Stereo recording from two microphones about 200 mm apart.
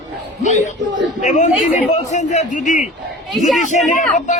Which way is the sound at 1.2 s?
40° left (ahead or behind).